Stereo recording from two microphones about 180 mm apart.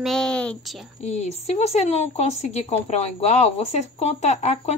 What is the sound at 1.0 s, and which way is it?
Speech, 35° left (ahead or behind).